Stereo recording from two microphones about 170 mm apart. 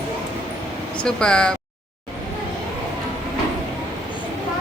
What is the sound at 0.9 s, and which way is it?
Speech, 5° left (ahead or behind).